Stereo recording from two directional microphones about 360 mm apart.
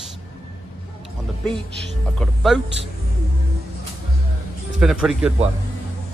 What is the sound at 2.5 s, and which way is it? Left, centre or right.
Speech, centre.